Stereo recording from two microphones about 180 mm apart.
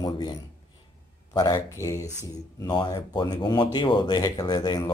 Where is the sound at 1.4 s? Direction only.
20° left (ahead or behind).